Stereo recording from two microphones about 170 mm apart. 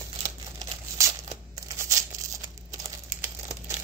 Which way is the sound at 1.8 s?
20° right (ahead or behind).